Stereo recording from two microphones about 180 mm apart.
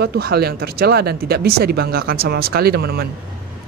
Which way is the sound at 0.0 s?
60° right (ahead or behind).